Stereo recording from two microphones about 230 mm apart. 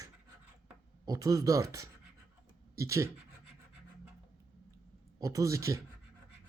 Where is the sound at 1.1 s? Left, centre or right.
Centre.